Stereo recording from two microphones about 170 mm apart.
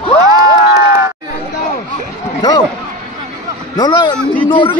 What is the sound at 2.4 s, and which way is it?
Speech, 25° left (ahead or behind).